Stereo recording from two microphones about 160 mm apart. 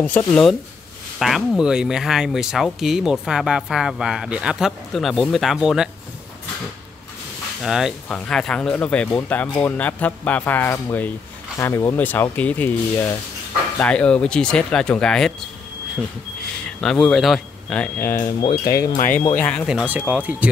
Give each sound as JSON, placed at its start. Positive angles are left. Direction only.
{"t": 0.3, "sound": "speech", "side_deg": 5}
{"t": 7.6, "sound": "speech", "side_deg": 0}
{"t": 16.6, "sound": "speech", "side_deg": 5}
{"t": 18.4, "sound": "speech", "side_deg": 25}
{"t": 19.4, "sound": "speech", "side_deg": 0}